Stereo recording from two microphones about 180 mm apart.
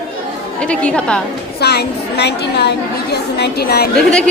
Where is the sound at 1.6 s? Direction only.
65° left (ahead or behind).